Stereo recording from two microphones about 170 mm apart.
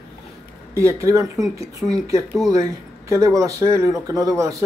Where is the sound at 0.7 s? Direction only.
15° right (ahead or behind).